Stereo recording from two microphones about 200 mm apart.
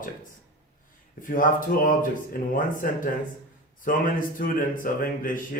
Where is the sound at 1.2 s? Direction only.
45° left (ahead or behind).